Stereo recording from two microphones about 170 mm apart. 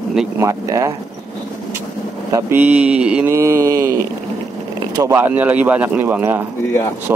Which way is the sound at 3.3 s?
15° right (ahead or behind).